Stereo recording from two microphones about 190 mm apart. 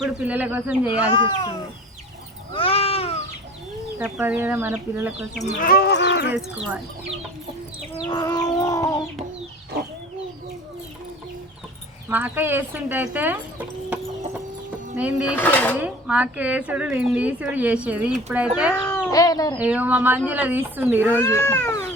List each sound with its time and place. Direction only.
0.0 s a woman's voice: 5° right (ahead or behind)
0.9 s speech: 25° left (ahead or behind)
2.5 s cat: 30° left (ahead or behind)
3.9 s a woman's voice: 10° right (ahead or behind)
5.5 s speech: 50° left (ahead or behind)
6.3 s speech: 5° right (ahead or behind)
8.0 s chicken: 20° left (ahead or behind)
12.0 s a woman's voice: 10° right (ahead or behind)
14.9 s a woman's voice: 5° right (ahead or behind)
15.4 s speech: 10° left (ahead or behind)
15.8 s a woman's voice: 10° right (ahead or behind)
18.8 s speech: 15° left (ahead or behind)
19.5 s a woman's voice: 10° right (ahead or behind)
21.2 s speech: 15° left (ahead or behind)